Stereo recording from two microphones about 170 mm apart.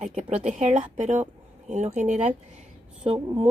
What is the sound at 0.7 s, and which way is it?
A woman's voice, 45° right (ahead or behind).